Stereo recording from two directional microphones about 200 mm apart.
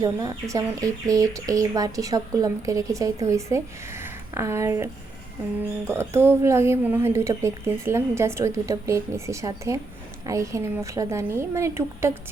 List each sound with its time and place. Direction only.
0.0 s speech: 15° right (ahead or behind)
5.9 s speech: 10° right (ahead or behind)